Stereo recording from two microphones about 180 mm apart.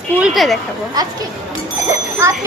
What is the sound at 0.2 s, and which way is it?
Speech, centre (ahead or behind).